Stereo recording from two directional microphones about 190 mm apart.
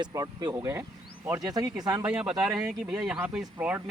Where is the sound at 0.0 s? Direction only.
20° right (ahead or behind).